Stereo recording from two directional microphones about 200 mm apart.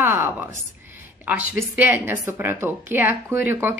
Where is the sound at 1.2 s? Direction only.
10° right (ahead or behind).